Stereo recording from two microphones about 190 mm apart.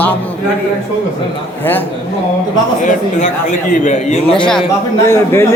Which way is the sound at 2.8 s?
40° left (ahead or behind).